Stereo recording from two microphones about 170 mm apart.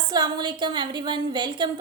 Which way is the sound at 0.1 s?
25° right (ahead or behind).